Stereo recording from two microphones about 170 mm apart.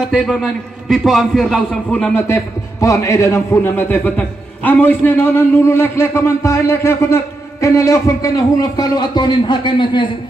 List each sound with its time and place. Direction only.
0.1 s a man's voice: 5° left (ahead or behind)
2.2 s a man's voice: 15° left (ahead or behind)